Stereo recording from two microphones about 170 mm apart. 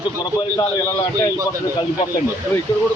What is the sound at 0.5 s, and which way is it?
Speech, 20° left (ahead or behind).